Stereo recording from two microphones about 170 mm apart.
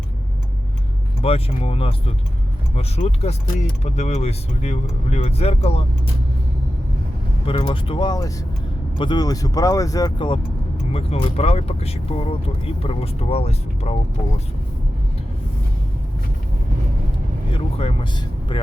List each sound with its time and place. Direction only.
1.2 s speech: 35° left (ahead or behind)
7.4 s speech: 30° left (ahead or behind)
17.5 s vehicle: 30° left (ahead or behind)